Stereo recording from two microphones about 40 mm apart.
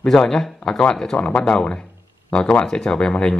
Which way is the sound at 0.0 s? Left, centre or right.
Centre.